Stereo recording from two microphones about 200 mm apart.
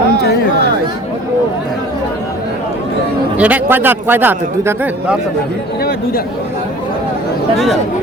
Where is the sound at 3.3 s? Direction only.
10° right (ahead or behind).